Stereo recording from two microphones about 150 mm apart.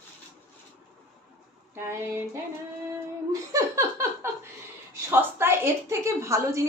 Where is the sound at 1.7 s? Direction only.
15° right (ahead or behind).